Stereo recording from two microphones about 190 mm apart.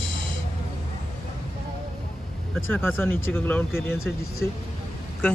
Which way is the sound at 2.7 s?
10° left (ahead or behind).